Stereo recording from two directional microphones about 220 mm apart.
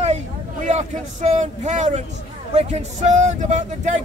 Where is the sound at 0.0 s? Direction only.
30° right (ahead or behind).